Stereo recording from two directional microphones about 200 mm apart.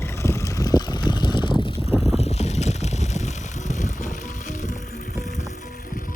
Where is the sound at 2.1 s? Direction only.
30° left (ahead or behind).